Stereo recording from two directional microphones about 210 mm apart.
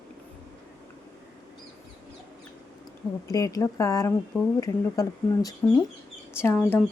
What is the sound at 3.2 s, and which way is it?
A woman's voice, 15° left (ahead or behind).